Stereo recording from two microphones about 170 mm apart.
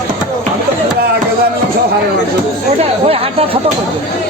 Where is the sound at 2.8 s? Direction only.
35° right (ahead or behind).